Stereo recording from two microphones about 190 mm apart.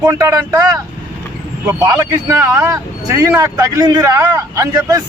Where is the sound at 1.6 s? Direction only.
15° right (ahead or behind).